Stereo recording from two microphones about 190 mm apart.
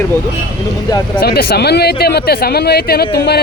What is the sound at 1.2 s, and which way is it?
Speech, 55° left (ahead or behind).